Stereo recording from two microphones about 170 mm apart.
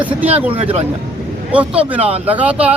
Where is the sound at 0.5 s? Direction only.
35° right (ahead or behind).